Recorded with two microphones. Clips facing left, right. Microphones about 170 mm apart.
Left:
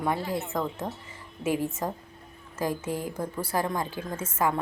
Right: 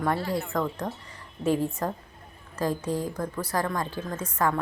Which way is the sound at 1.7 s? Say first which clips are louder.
Right 1 dB; 20° left (ahead or behind).